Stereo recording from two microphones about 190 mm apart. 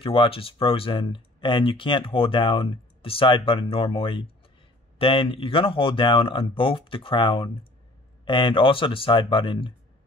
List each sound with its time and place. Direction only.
0.0 s speech: 25° left (ahead or behind)